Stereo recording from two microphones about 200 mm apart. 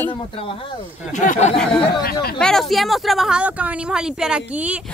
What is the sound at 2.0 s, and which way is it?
Speech, 50° left (ahead or behind).